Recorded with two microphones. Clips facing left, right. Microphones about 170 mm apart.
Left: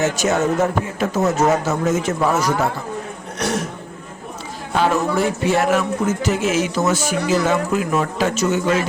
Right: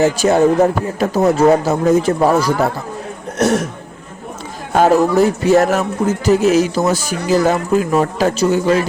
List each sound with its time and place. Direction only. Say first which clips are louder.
0.0 s speech: right 6 dB; 35° right (ahead or behind)
4.7 s speech: right 6 dB; 40° right (ahead or behind)